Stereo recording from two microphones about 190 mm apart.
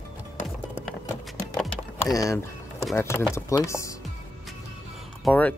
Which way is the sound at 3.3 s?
15° left (ahead or behind).